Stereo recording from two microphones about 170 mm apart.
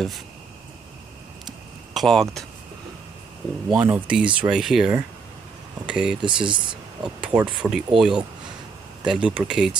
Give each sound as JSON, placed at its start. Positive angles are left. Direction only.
{"t": 2.0, "sound": "speech", "side_deg": 0}
{"t": 3.7, "sound": "speech", "side_deg": -5}
{"t": 6.2, "sound": "speech", "side_deg": -30}
{"t": 7.0, "sound": "speech", "side_deg": -5}